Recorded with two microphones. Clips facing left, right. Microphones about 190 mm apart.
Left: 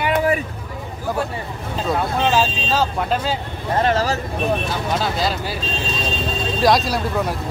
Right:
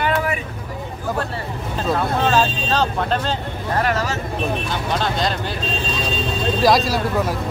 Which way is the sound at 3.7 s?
30° left (ahead or behind).